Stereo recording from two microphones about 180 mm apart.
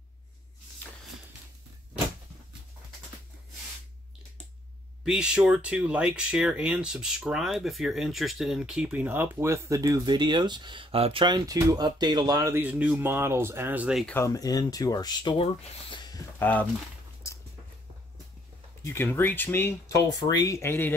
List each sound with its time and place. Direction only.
5.0 s speech: 5° right (ahead or behind)
14.0 s speech: 15° left (ahead or behind)
16.3 s speech: 10° left (ahead or behind)
18.9 s speech: 15° left (ahead or behind)